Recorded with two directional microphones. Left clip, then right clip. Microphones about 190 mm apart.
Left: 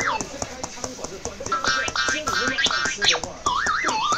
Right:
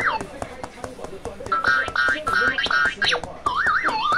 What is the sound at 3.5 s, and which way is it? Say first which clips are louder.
Car alarm: right 2 dB; centre (ahead or behind).